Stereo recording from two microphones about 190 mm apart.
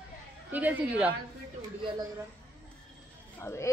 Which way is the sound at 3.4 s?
15° left (ahead or behind).